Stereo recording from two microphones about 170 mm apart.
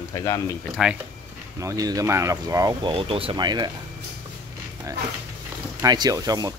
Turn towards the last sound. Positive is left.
turn(degrees=-20)  # may be behind; listen again after turning